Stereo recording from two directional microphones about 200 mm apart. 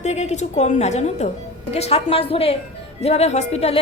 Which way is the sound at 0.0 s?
35° left (ahead or behind).